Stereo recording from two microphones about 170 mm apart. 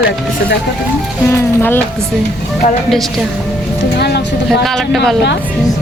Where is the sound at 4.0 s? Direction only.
75° left (ahead or behind).